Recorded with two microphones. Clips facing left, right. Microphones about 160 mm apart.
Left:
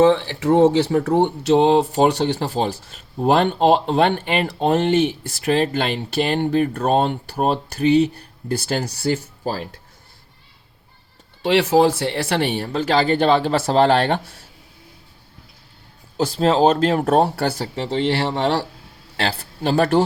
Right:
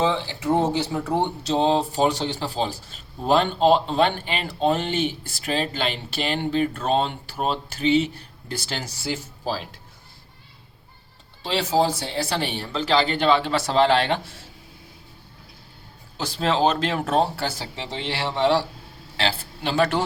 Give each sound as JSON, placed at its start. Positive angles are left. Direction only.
{"t": 0.0, "sound": "speech", "side_deg": 65}
{"t": 11.4, "sound": "speech", "side_deg": 70}
{"t": 16.1, "sound": "speech", "side_deg": 35}
{"t": 17.2, "sound": "speech", "side_deg": 60}
{"t": 19.1, "sound": "a sound", "side_deg": 50}
{"t": 19.7, "sound": "speech", "side_deg": 35}